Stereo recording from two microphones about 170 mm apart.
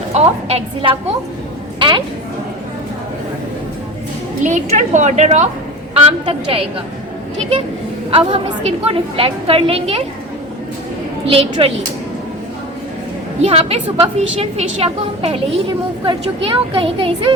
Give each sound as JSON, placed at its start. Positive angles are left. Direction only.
{"t": 0.1, "sound": "a woman's voice", "side_deg": -35}
{"t": 4.4, "sound": "a woman's voice", "side_deg": -45}
{"t": 8.1, "sound": "a woman's voice", "side_deg": -35}
{"t": 11.3, "sound": "a woman's voice", "side_deg": -35}
{"t": 13.4, "sound": "a woman's voice", "side_deg": -35}